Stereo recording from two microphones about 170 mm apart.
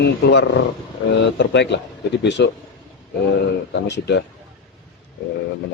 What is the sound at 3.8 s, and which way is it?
Speech, 90° left.